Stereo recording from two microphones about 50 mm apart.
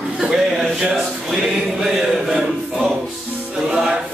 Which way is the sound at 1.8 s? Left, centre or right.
Centre.